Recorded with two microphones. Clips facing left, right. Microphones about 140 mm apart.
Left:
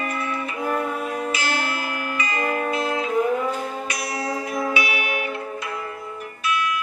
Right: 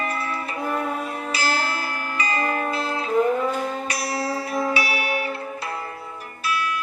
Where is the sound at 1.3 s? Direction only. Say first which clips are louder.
Even; 35° right (ahead or behind).